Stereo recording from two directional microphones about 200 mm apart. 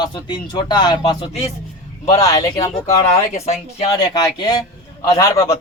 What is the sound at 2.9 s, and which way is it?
Speech, 30° left (ahead or behind).